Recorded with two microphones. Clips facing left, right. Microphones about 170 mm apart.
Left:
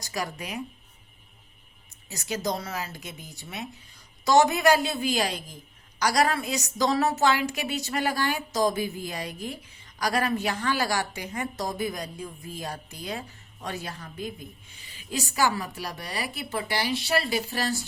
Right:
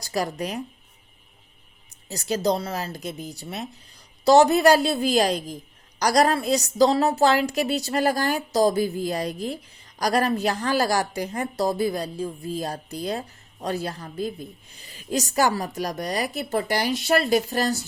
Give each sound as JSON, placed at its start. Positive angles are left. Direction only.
{"t": 0.0, "sound": "speech", "side_deg": -35}
{"t": 2.0, "sound": "a woman's voice", "side_deg": -35}